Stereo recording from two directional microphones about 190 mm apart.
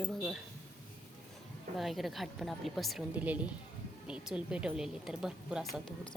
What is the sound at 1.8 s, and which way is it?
Speech, centre (ahead or behind).